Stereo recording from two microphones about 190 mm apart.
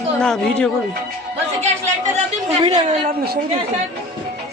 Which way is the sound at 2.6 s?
35° right (ahead or behind).